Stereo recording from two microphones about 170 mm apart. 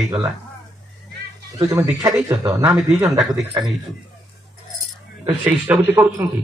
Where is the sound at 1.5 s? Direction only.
15° right (ahead or behind).